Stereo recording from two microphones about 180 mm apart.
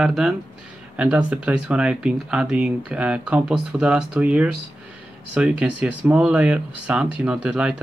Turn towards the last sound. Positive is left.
turn(degrees=-5)  # may be behind; listen again after turning